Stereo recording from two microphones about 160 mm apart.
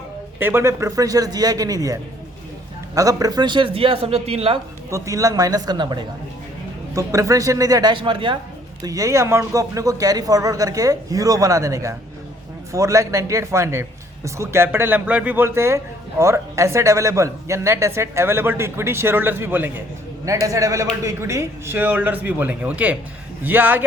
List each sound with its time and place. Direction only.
0.3 s a man's voice: 15° right (ahead or behind); by 4.6 s 40° right (ahead or behind)
4.9 s a man's voice: 20° right (ahead or behind)
8.8 s a man's voice: 20° right (ahead or behind)